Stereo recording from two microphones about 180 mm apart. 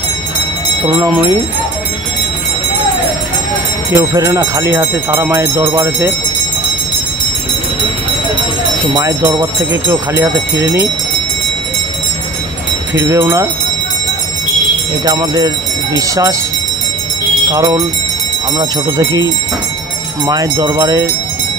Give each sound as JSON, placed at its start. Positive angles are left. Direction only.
{"t": 0.9, "sound": "speech", "side_deg": -10}
{"t": 3.9, "sound": "speech", "side_deg": -20}
{"t": 8.9, "sound": "speech", "side_deg": -20}
{"t": 12.9, "sound": "speech", "side_deg": -15}
{"t": 15.0, "sound": "speech", "side_deg": -20}
{"t": 17.5, "sound": "speech", "side_deg": -20}
{"t": 20.2, "sound": "speech", "side_deg": -20}